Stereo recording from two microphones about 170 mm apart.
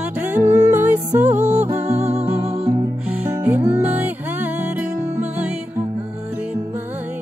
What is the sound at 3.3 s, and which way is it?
Music, 15° right (ahead or behind).